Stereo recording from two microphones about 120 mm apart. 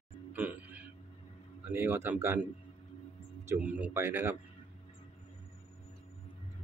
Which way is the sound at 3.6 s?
10° right (ahead or behind).